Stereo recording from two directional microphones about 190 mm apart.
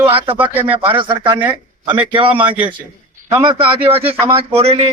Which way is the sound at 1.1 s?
25° right (ahead or behind).